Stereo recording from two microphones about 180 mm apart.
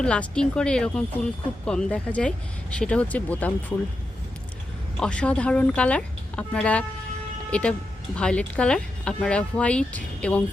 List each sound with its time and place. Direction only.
0.0 s speech: 5° left (ahead or behind)
4.9 s speech: 5° left (ahead or behind)